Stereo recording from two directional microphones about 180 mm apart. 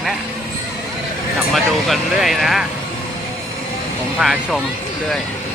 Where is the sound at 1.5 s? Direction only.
Centre (ahead or behind).